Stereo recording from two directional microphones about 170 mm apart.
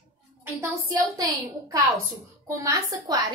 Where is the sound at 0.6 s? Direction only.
20° right (ahead or behind).